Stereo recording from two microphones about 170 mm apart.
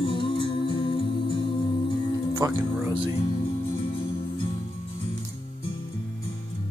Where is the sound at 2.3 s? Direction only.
20° right (ahead or behind).